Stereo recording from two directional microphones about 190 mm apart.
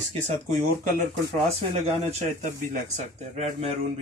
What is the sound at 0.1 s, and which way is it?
Speech, 40° right (ahead or behind).